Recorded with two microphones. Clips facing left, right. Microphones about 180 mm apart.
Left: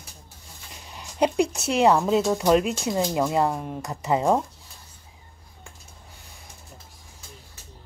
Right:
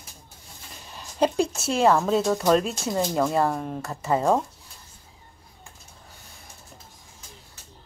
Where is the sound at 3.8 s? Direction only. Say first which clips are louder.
Left 1 dB; 15° left (ahead or behind).